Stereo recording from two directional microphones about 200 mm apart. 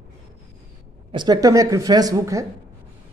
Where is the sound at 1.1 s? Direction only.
20° right (ahead or behind).